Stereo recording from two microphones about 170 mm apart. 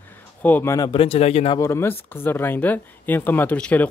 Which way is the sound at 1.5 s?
15° left (ahead or behind).